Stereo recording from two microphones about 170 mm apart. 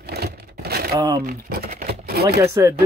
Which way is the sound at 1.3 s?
60° right (ahead or behind).